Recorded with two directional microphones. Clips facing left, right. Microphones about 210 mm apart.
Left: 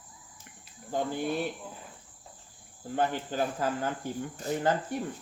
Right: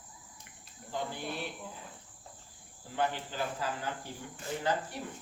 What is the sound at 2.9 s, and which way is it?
Cricket, 45° left (ahead or behind).